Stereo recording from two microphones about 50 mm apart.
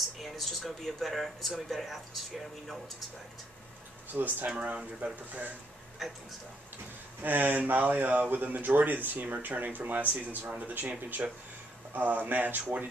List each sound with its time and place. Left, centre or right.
0.2 s speech: centre
4.1 s speech: right
4.5 s speech: right
6.0 s speech: centre
7.2 s speech: right